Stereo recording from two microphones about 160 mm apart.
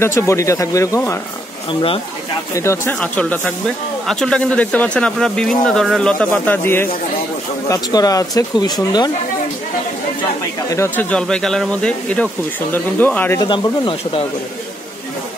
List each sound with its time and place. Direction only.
0.0 s speech: 15° left (ahead or behind)
1.7 s speech: 35° left (ahead or behind)
2.5 s speech: 15° left (ahead or behind)
10.7 s speech: 15° left (ahead or behind)
13.4 s speech: 30° left (ahead or behind)